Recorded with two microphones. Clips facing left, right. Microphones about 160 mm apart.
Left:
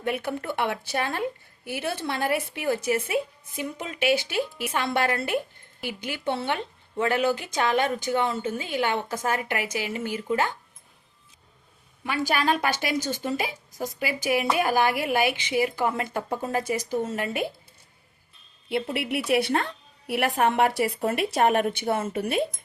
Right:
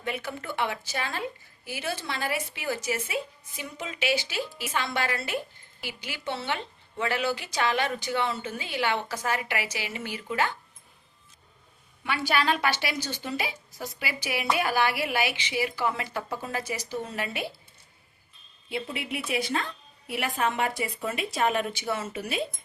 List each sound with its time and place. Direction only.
0.0 s a woman's voice: 55° left (ahead or behind)
12.0 s a woman's voice: 40° left (ahead or behind)
18.7 s a woman's voice: 65° left (ahead or behind)